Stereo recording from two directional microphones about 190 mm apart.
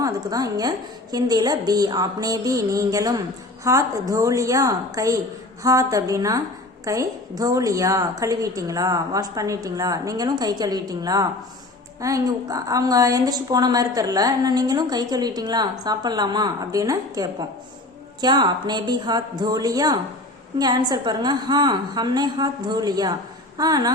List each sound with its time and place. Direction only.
0.0 s a woman's voice: 20° right (ahead or behind)